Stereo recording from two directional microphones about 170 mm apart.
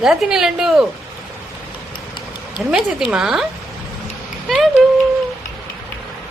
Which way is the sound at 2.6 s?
5° right (ahead or behind).